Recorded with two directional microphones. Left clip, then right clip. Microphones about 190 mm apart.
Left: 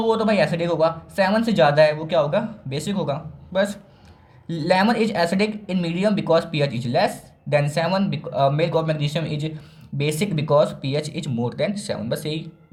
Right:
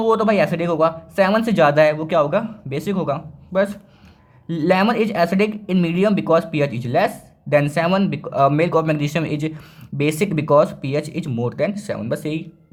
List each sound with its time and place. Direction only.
0.1 s speech: 25° right (ahead or behind)